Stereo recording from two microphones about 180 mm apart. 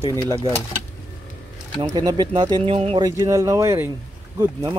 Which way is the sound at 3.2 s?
15° right (ahead or behind).